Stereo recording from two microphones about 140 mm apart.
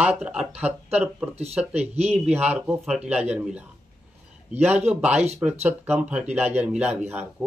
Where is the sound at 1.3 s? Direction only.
50° right (ahead or behind).